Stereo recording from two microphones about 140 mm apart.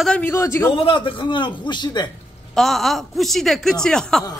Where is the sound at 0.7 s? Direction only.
40° left (ahead or behind).